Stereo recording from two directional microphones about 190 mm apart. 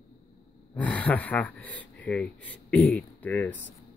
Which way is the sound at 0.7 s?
5° left (ahead or behind).